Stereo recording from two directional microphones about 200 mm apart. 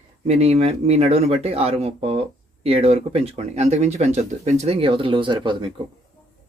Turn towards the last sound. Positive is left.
turn(degrees=-25)  # may be behind; listen again after turning